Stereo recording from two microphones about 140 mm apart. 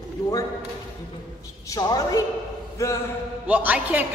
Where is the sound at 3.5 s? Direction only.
10° right (ahead or behind).